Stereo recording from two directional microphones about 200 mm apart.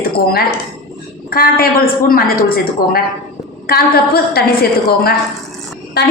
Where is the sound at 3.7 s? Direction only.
50° left (ahead or behind).